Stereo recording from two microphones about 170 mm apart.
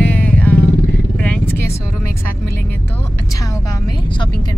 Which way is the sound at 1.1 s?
5° left (ahead or behind).